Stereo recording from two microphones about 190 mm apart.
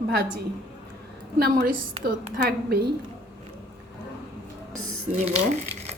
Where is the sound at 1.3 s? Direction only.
50° right (ahead or behind).